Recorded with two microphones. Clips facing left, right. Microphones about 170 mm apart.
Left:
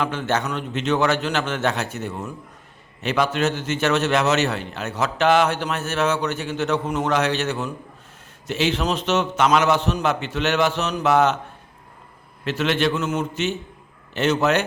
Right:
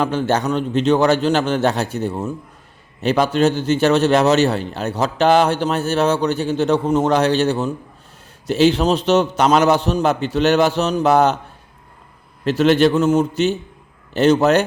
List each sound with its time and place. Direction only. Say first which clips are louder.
0.0 s a man's voice: right 5 dB; 35° right (ahead or behind)
12.5 s a man's voice: right 8 dB; 40° right (ahead or behind)